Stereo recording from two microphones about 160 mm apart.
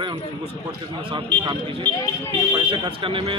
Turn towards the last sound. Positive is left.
turn(degrees=-35)  # may be behind; listen again after turning